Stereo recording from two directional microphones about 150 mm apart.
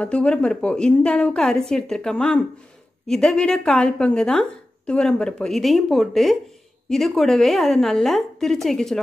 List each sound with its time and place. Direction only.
0.0 s a woman's voice: 5° left (ahead or behind)